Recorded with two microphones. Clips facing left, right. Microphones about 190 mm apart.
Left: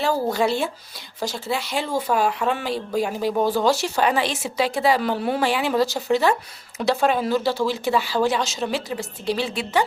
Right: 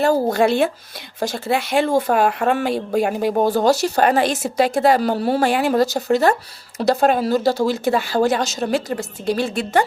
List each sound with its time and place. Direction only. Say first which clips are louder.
0.0 s speech: right 5 dB; 50° right (ahead or behind)